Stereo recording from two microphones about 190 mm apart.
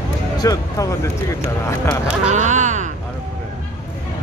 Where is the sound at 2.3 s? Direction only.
40° right (ahead or behind).